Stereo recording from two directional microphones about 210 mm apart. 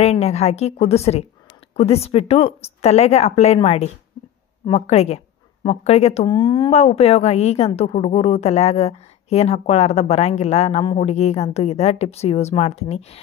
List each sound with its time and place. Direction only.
0.0 s a woman's voice: 30° left (ahead or behind)